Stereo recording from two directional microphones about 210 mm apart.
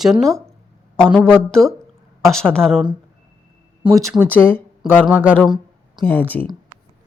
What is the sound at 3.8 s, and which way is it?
Speech, 15° right (ahead or behind).